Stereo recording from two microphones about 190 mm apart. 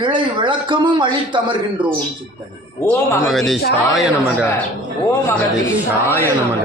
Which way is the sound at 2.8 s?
15° left (ahead or behind).